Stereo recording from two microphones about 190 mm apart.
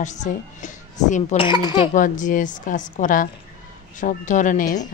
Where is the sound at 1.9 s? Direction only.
45° left (ahead or behind).